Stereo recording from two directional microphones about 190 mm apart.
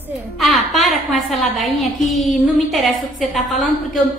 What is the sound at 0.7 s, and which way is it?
A woman's voice, centre (ahead or behind).